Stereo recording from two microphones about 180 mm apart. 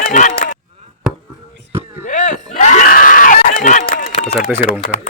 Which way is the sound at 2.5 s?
40° left (ahead or behind).